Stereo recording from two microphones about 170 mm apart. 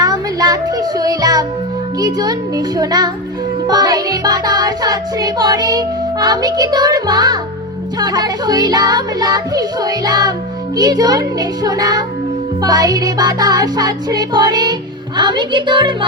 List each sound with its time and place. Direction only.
0.0 s music: 20° right (ahead or behind)